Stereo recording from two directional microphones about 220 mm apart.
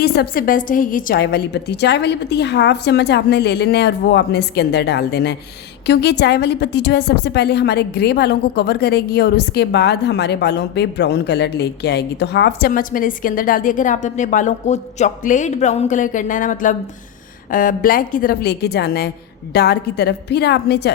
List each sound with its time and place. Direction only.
0.0 s a woman's voice: 45° left (ahead or behind)